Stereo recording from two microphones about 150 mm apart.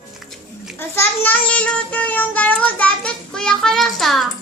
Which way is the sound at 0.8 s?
15° left (ahead or behind).